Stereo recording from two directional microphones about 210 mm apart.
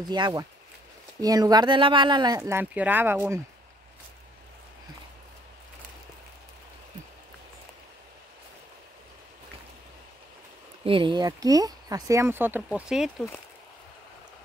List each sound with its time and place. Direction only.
0.1 s speech: 20° right (ahead or behind)
10.8 s speech: 25° right (ahead or behind); by 13.1 s 5° right (ahead or behind)